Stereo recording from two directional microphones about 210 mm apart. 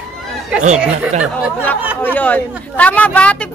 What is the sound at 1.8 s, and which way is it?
Speech, 5° right (ahead or behind).